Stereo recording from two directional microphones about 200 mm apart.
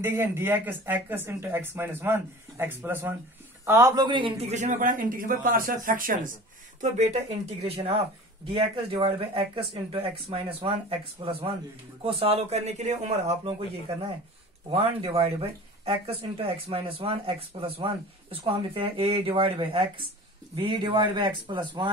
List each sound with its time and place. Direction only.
0.0 s a man's voice: 10° right (ahead or behind)